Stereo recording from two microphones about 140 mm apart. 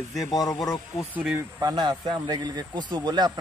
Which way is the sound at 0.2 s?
25° left (ahead or behind).